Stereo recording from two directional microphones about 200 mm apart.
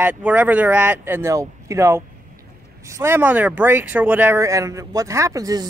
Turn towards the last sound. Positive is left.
turn(degrees=-15)  # may be behind; listen again after turning